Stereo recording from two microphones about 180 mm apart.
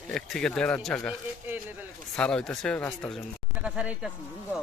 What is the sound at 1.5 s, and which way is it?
Speech, 10° right (ahead or behind).